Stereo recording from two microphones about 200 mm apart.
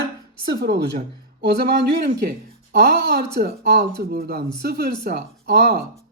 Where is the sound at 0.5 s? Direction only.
50° right (ahead or behind).